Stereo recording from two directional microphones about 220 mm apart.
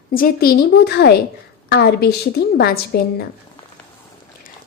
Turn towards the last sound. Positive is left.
turn(degrees=45)  # may be behind; listen again after turning